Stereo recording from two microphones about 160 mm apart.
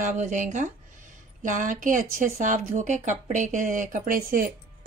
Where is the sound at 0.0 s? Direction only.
50° right (ahead or behind).